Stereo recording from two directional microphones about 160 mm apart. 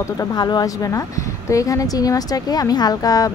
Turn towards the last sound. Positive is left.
turn(degrees=20)  # may be behind; listen again after turning